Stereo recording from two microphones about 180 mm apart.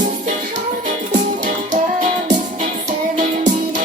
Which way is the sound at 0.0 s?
45° right (ahead or behind).